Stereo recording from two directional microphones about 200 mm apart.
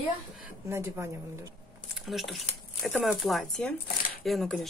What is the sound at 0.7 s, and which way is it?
Speech, 10° right (ahead or behind).